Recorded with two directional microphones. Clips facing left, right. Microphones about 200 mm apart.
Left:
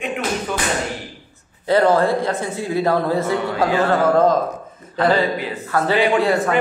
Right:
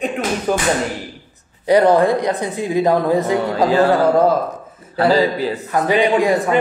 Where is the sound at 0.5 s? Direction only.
40° right (ahead or behind).